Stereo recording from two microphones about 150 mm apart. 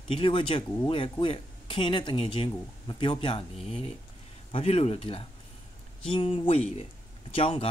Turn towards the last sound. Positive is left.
turn(degrees=40)  # may be behind; listen again after turning